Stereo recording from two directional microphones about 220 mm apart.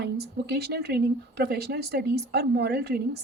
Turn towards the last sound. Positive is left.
turn(degrees=-45)  # may be behind; listen again after turning